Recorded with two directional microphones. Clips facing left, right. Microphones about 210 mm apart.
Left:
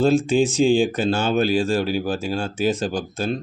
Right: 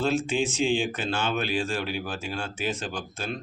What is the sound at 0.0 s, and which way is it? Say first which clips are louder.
Speech: left 8 dB; 40° left (ahead or behind).